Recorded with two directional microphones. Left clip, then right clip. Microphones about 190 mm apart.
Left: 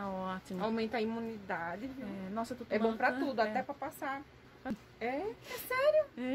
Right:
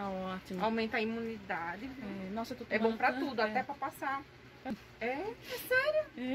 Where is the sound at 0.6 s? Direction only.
55° left (ahead or behind).